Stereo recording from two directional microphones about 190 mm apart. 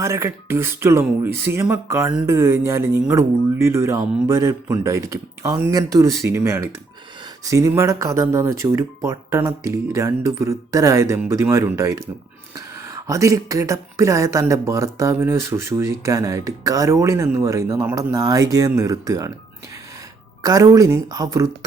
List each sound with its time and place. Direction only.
0.0 s speech: 15° right (ahead or behind)
20.4 s a woman's voice: 20° right (ahead or behind)